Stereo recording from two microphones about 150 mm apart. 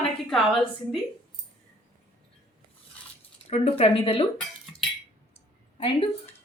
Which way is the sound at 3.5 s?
40° left (ahead or behind).